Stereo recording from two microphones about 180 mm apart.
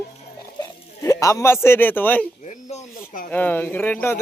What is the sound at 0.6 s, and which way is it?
Speech, 20° left (ahead or behind).